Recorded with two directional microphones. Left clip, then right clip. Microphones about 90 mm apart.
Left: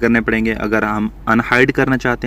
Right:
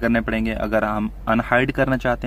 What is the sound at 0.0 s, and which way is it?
Speech, 20° left (ahead or behind).